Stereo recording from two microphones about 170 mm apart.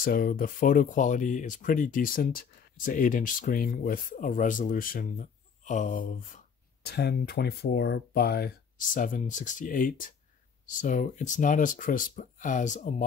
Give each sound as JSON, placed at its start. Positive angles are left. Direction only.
{"t": 0.0, "sound": "speech", "side_deg": 55}
{"t": 6.9, "sound": "speech", "side_deg": 75}